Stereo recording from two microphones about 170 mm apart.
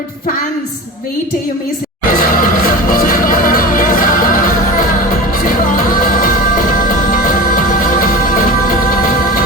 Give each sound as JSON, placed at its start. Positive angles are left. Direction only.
{"t": 2.0, "sound": "music", "side_deg": 55}
{"t": 5.5, "sound": "music", "side_deg": 55}